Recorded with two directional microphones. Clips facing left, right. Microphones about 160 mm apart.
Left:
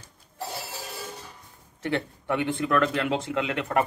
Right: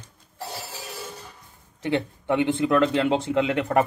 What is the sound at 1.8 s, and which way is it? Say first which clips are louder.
Speech: right 3 dB; 20° right (ahead or behind).